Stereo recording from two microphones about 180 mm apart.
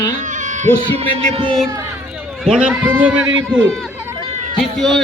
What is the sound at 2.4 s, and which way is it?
A man's voice, 5° right (ahead or behind).